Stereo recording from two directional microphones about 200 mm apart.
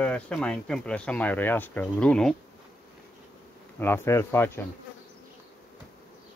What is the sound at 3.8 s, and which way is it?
Speech, 10° left (ahead or behind).